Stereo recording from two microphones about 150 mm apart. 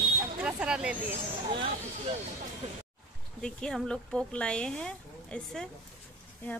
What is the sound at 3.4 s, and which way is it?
A woman's voice, 5° left (ahead or behind).